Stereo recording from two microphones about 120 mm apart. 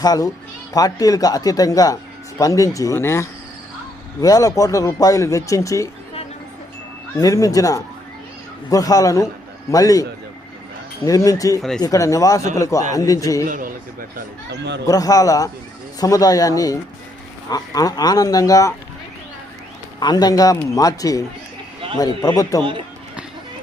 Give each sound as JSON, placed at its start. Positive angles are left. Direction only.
{"t": 0.0, "sound": "speech", "side_deg": 30}
{"t": 7.2, "sound": "speech", "side_deg": 30}
{"t": 14.8, "sound": "speech", "side_deg": 30}
{"t": 20.0, "sound": "speech", "side_deg": 35}